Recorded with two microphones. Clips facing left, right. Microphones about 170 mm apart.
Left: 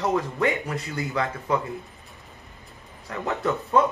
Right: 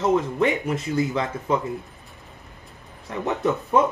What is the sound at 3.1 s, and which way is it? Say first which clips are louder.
Speech: right 3 dB; 20° right (ahead or behind).